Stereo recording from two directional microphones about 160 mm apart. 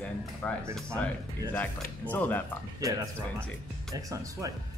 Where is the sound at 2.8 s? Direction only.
20° right (ahead or behind).